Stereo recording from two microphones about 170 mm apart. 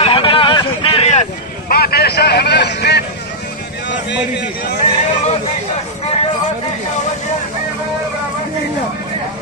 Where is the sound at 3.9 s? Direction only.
90° left.